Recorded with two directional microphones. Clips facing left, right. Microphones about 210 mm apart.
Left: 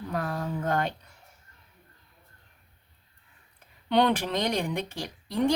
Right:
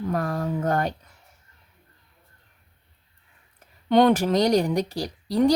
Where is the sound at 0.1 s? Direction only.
45° right (ahead or behind).